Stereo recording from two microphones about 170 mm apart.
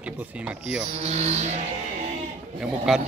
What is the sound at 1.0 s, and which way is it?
Speech, 40° right (ahead or behind).